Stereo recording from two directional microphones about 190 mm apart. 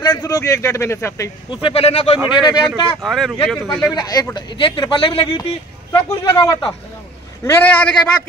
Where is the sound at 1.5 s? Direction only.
30° left (ahead or behind).